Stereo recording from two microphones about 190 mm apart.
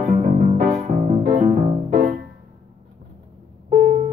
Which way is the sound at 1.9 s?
50° right (ahead or behind).